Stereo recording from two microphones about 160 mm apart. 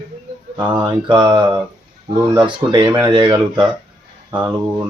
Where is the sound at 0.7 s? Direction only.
30° right (ahead or behind).